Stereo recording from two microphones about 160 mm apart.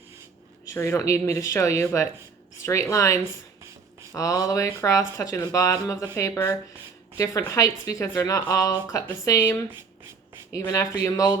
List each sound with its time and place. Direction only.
0.7 s speech: 20° left (ahead or behind)
10.7 s speech: 20° left (ahead or behind)